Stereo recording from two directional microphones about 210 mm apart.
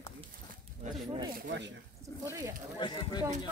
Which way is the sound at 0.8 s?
35° right (ahead or behind).